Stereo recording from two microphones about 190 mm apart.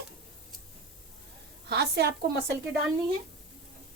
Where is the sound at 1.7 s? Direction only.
60° right (ahead or behind).